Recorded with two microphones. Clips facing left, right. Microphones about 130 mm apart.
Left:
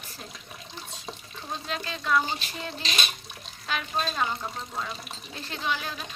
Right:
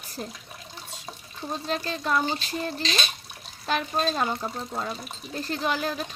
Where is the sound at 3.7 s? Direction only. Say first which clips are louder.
Right 4 dB; 40° right (ahead or behind).